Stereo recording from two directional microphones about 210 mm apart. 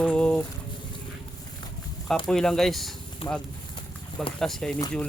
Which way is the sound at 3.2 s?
20° left (ahead or behind).